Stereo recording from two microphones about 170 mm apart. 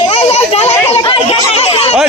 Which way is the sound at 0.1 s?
40° left (ahead or behind).